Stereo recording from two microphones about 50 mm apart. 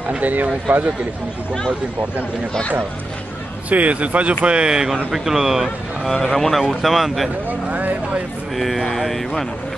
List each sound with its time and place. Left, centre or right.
0.2 s speech: right
3.7 s speech: right; by 6.1 s centre
6.2 s speech: centre
7.4 s speech: right
8.5 s speech: centre